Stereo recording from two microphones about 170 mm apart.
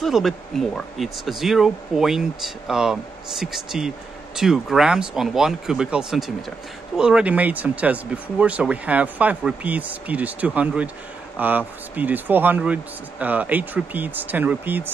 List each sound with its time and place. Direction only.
0.0 s speech: centre (ahead or behind)